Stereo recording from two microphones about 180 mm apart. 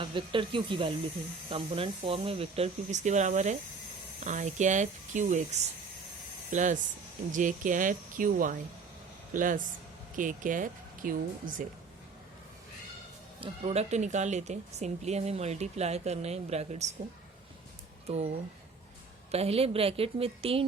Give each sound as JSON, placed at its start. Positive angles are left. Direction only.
{"t": 0.0, "sound": "speech", "side_deg": -30}
{"t": 13.4, "sound": "speech", "side_deg": -30}
{"t": 19.3, "sound": "speech", "side_deg": -35}